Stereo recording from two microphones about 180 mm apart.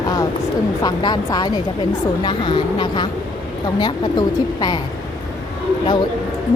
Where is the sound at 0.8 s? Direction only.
25° left (ahead or behind).